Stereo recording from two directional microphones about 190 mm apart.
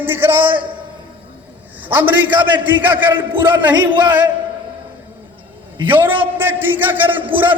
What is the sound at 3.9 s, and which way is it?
Speech, 25° right (ahead or behind).